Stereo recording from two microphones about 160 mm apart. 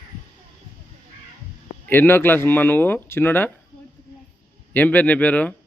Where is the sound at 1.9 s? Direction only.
15° left (ahead or behind).